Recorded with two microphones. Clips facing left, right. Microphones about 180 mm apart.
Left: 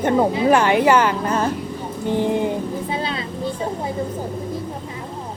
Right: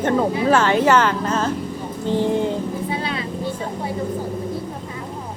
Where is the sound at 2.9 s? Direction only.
25° left (ahead or behind).